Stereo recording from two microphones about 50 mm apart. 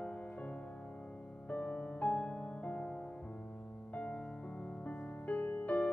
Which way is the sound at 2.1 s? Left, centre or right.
Centre.